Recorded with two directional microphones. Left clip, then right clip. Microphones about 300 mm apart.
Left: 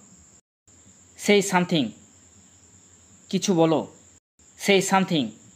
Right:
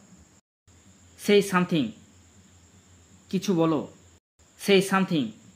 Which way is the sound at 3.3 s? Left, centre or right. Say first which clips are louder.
Left 4 dB; centre.